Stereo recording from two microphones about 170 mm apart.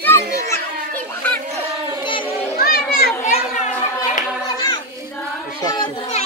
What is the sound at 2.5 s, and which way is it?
Children playing, 65° left (ahead or behind).